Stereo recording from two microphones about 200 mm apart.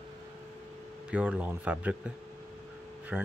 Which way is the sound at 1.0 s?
5° right (ahead or behind).